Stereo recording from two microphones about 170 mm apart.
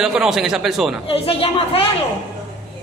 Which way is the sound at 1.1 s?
35° left (ahead or behind).